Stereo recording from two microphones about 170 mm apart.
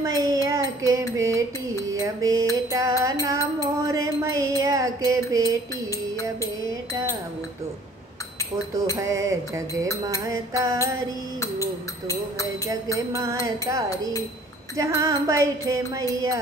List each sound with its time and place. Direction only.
0.0 s a child's voice: 20° right (ahead or behind)
1.1 s mantra: 20° right (ahead or behind)
1.9 s music: 20° right (ahead or behind)
8.9 s music: 20° right (ahead or behind)
13.1 s music: 20° right (ahead or behind)
14.8 s music: 20° right (ahead or behind)